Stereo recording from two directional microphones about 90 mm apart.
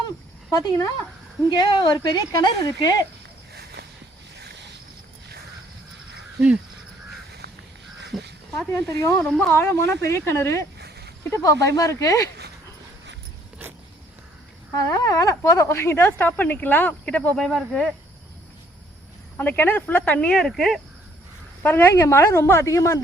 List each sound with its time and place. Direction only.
0.5 s speech: 40° left (ahead or behind)
1.5 s speech: 60° left (ahead or behind)
1.9 s speech: 45° left (ahead or behind)
8.7 s speech: 35° left (ahead or behind)
9.2 s speech: 5° left (ahead or behind)
9.5 s speech: 30° left (ahead or behind)
15.0 s speech: 40° left (ahead or behind); by 17.8 s 5° left (ahead or behind)
19.4 s speech: 20° left (ahead or behind); by 20.8 s centre (ahead or behind)
21.6 s speech: 20° left (ahead or behind)